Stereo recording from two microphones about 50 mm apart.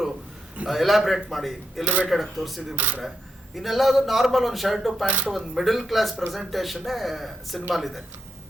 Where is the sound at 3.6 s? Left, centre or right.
Centre.